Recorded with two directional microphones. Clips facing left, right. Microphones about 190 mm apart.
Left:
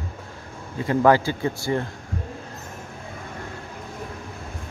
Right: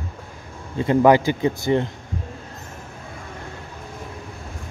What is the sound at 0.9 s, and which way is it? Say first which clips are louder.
Speech: right 3 dB; 15° right (ahead or behind).